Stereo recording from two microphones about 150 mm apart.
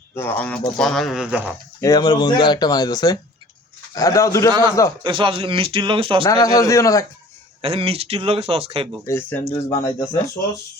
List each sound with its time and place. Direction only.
0.1 s speech: 15° left (ahead or behind); by 1.5 s 5° right (ahead or behind)
1.8 s speech: 25° left (ahead or behind)
5.0 s speech: 35° right (ahead or behind)
6.2 s speech: 20° left (ahead or behind)
7.6 s speech: 40° right (ahead or behind)
9.0 s speech: 15° left (ahead or behind)